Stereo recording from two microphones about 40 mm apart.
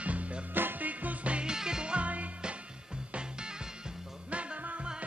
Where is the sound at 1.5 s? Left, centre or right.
Centre.